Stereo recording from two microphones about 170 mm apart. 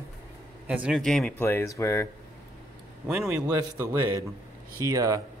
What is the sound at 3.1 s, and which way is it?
Speech, 10° right (ahead or behind).